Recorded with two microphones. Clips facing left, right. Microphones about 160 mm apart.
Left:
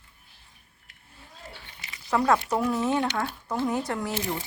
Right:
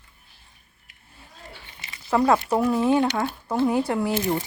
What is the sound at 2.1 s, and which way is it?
A woman's voice, 5° right (ahead or behind).